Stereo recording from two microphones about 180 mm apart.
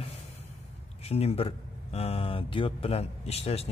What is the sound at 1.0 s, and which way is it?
Speech, 35° left (ahead or behind).